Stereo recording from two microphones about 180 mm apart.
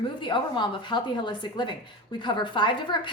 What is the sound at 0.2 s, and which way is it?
Speech, 25° left (ahead or behind).